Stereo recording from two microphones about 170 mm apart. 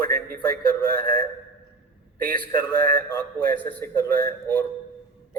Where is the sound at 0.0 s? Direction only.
60° right (ahead or behind).